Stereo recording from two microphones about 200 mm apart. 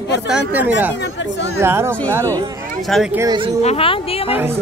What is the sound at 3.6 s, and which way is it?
Speech, 30° left (ahead or behind).